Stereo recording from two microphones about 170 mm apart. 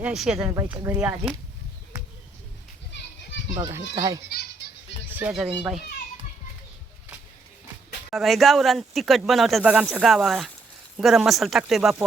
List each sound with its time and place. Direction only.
0.0 s speech: 5° right (ahead or behind)
0.5 s a woman's voice: 15° right (ahead or behind)
3.5 s a child's voice: 20° right (ahead or behind)
5.1 s speech: 5° right (ahead or behind)
8.1 s speech: centre (ahead or behind)